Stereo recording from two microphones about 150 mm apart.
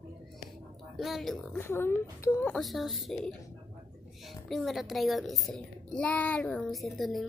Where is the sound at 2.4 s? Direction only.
Centre (ahead or behind).